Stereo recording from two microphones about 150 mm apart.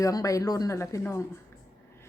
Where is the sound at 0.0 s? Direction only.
20° left (ahead or behind).